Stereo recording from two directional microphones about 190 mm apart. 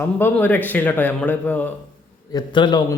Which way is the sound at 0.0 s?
10° left (ahead or behind).